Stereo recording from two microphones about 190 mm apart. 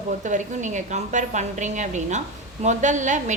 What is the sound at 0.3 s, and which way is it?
A woman's voice, 40° right (ahead or behind).